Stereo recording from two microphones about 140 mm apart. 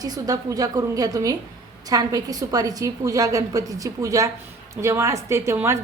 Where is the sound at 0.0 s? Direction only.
25° right (ahead or behind).